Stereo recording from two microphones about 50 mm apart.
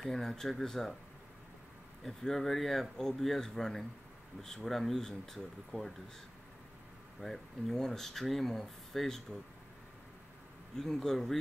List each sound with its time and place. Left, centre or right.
0.0 s speech: centre
2.0 s speech: centre
7.2 s speech: centre
10.8 s speech: centre